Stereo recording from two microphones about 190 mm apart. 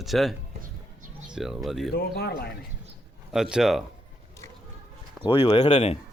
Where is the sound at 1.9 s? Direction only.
55° left (ahead or behind).